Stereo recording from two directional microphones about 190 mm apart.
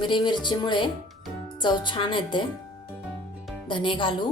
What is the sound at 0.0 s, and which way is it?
Speech, 25° left (ahead or behind).